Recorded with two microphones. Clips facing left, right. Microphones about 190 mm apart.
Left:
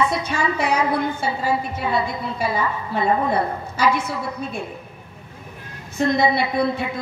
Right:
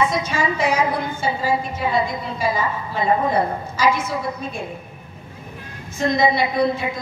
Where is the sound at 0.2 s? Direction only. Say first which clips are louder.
Right 1 dB; 60° left (ahead or behind).